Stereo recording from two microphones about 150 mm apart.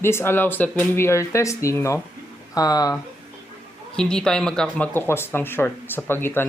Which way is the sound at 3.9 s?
5° left (ahead or behind).